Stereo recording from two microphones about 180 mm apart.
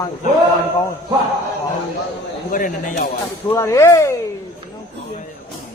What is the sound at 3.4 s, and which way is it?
Speech, 15° left (ahead or behind).